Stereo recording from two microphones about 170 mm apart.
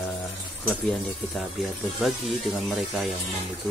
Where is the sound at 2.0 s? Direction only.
Centre (ahead or behind).